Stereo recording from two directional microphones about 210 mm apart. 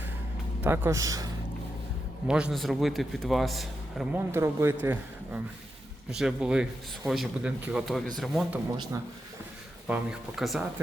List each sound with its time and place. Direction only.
0.6 s speech: 10° right (ahead or behind)
2.2 s a man's voice: 5° right (ahead or behind)
4.3 s a man's voice: 10° right (ahead or behind)
9.8 s a man's voice: 5° right (ahead or behind)